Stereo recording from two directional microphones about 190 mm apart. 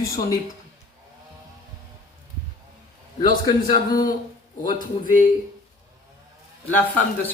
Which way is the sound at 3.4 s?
20° left (ahead or behind).